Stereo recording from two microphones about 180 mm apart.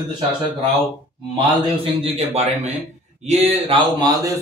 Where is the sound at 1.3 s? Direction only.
30° right (ahead or behind).